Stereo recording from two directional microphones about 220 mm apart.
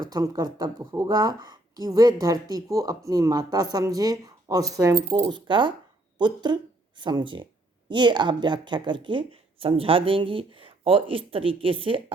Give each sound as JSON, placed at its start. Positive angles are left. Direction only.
{"t": 0.0, "sound": "speech", "side_deg": -15}
{"t": 4.9, "sound": "speech", "side_deg": -30}